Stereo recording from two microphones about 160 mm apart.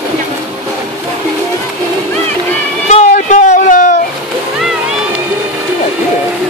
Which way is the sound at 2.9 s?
45° left (ahead or behind).